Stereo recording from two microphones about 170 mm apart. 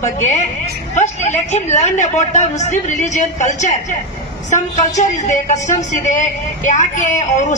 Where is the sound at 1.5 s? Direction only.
45° left (ahead or behind).